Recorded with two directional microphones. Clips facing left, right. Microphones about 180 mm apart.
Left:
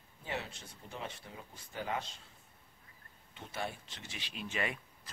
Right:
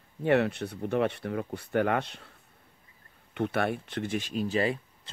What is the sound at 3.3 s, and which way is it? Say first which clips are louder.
Speech: right 13 dB; 65° right (ahead or behind).